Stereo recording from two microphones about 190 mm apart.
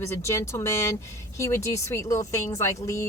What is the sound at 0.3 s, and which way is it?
A woman's voice, 15° left (ahead or behind).